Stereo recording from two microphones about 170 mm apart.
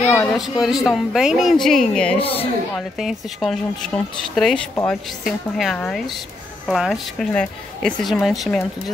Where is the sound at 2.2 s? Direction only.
35° left (ahead or behind).